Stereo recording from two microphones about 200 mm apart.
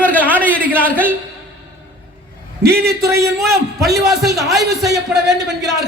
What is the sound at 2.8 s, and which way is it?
Speech, 15° right (ahead or behind).